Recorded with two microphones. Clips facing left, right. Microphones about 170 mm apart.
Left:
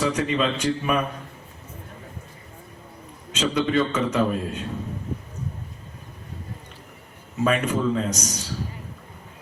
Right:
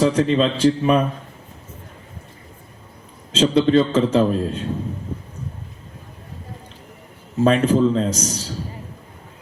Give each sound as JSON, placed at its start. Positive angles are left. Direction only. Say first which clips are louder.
{"t": 0.0, "sound": "a man's voice", "louder": "right 6 dB", "side_deg": -30}
{"t": 3.3, "sound": "a man's voice", "louder": "right 7 dB", "side_deg": -30}
{"t": 7.4, "sound": "a man's voice", "louder": "right 6 dB", "side_deg": -30}